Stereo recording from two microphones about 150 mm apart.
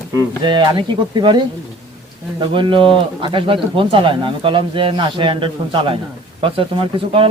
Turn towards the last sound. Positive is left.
turn(degrees=-35)  # may be behind; listen again after turning